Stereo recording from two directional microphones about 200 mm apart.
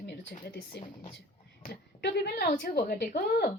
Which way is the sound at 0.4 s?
55° left (ahead or behind).